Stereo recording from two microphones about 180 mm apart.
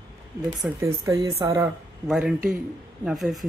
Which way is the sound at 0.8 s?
15° right (ahead or behind).